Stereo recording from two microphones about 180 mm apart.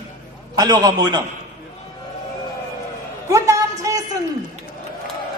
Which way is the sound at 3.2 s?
15° right (ahead or behind).